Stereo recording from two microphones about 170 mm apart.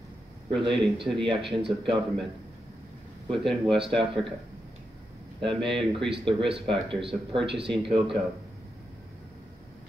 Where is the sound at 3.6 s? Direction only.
30° right (ahead or behind).